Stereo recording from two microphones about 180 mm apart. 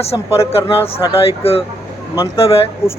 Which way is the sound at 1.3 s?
30° left (ahead or behind).